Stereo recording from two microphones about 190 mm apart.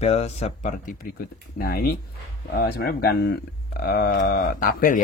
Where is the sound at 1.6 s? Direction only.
55° left (ahead or behind).